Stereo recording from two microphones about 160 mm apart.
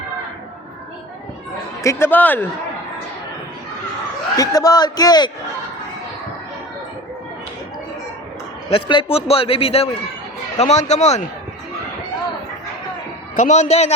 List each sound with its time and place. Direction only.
1.8 s speech: 15° left (ahead or behind)
4.4 s a man's voice: 20° left (ahead or behind)
8.7 s a man's voice: 35° left (ahead or behind)
13.3 s speech: 50° left (ahead or behind)